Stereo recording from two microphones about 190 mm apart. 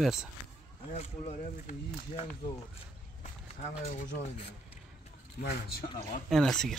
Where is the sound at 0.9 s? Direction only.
35° left (ahead or behind).